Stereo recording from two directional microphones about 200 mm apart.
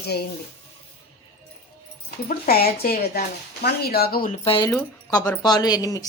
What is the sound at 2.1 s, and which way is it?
Speech, 45° left (ahead or behind).